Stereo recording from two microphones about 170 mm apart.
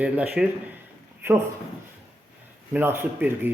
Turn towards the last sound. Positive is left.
turn(degrees=-10)  # may be behind; listen again after turning